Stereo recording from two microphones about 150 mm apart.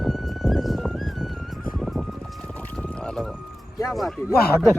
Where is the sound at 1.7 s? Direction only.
Centre (ahead or behind).